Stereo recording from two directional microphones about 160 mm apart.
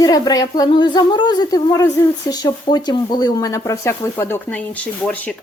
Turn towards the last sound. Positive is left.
turn(degrees=10)  # may be behind; listen again after turning